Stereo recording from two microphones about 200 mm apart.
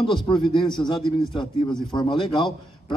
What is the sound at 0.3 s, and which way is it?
Speech, 25° left (ahead or behind).